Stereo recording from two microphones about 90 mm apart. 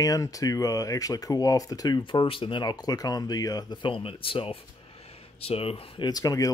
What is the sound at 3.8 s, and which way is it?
Speech, 80° left.